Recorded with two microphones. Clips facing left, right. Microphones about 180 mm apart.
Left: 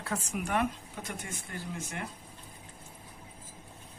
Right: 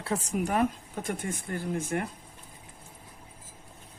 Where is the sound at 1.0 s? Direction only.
50° right (ahead or behind).